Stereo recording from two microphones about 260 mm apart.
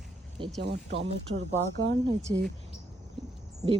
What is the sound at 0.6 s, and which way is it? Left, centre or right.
Speech, right.